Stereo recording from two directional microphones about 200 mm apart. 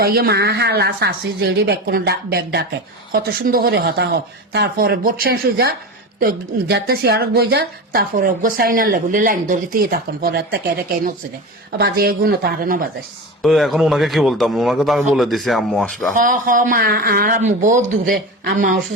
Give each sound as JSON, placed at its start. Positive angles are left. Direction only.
{"t": 0.0, "sound": "a woman's voice", "side_deg": -50}
{"t": 11.8, "sound": "a woman's voice", "side_deg": -50}
{"t": 13.4, "sound": "speech", "side_deg": 0}
{"t": 16.1, "sound": "a woman's voice", "side_deg": -40}